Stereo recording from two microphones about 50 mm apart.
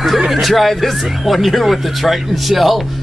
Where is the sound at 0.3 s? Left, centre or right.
Centre.